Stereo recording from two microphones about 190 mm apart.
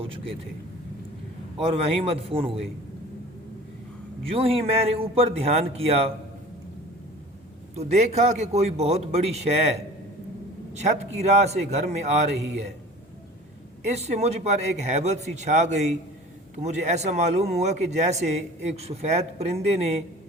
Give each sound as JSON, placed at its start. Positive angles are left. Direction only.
{"t": 1.5, "sound": "speech", "side_deg": -30}
{"t": 4.3, "sound": "speech", "side_deg": -30}
{"t": 7.8, "sound": "speech", "side_deg": -35}
{"t": 10.8, "sound": "speech", "side_deg": -35}
{"t": 13.8, "sound": "speech", "side_deg": -35}